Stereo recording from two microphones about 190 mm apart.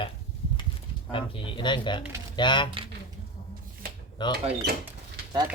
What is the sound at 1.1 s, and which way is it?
Speech, 30° left (ahead or behind).